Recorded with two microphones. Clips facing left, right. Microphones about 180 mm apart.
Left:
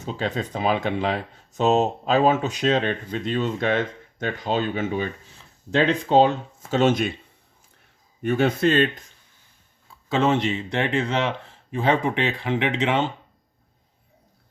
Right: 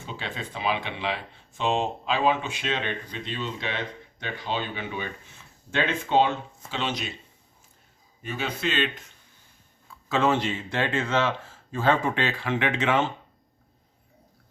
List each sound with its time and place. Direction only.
0.0 s speech: 40° left (ahead or behind)
8.2 s speech: 55° left (ahead or behind)
10.1 s speech: 20° left (ahead or behind)